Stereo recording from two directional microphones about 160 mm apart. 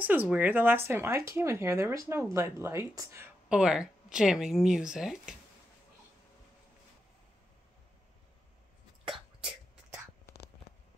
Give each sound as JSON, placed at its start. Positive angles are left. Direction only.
{"t": 0.0, "sound": "speech", "side_deg": -10}
{"t": 3.4, "sound": "speech", "side_deg": -5}